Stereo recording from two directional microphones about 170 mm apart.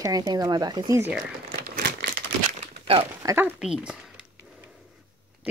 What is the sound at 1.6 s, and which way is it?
Crumpling, 65° right (ahead or behind).